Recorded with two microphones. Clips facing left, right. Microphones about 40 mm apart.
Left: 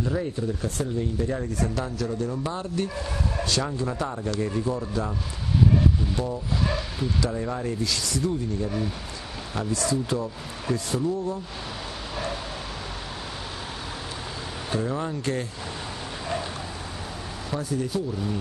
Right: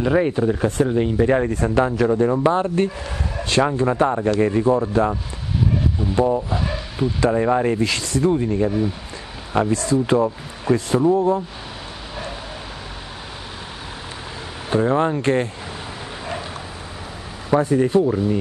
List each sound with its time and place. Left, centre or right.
0.0 s speech: right
1.5 s a man's voice: right
6.1 s a man's voice: right
6.5 s a sound: centre
7.2 s a man's voice: right
8.6 s speech: centre
9.6 s a man's voice: right
14.7 s a man's voice: right
17.5 s a man's voice: right